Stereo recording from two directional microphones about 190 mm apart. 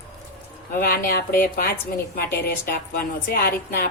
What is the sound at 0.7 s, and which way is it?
A woman's voice, 50° left (ahead or behind).